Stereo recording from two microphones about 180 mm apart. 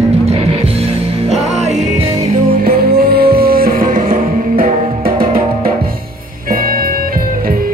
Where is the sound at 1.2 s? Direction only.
40° right (ahead or behind).